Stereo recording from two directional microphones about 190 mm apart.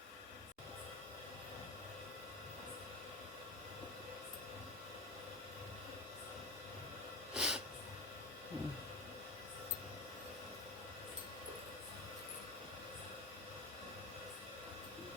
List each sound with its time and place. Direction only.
7.3 s snort: 5° right (ahead or behind)